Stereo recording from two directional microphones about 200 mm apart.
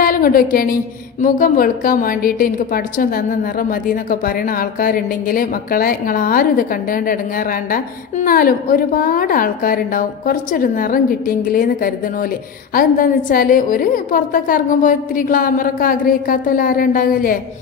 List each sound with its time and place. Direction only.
0.0 s a woman's voice: 45° left (ahead or behind)